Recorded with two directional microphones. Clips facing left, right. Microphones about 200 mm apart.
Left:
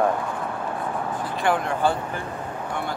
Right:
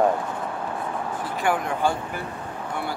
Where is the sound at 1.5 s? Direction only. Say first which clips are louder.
Left 1 dB; 10° right (ahead or behind).